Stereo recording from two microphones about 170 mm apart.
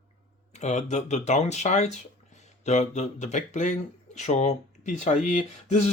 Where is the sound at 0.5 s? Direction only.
40° left (ahead or behind).